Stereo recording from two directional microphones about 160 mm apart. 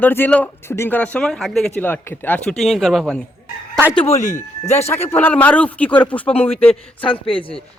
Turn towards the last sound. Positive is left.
turn(degrees=30)  # may be behind; listen again after turning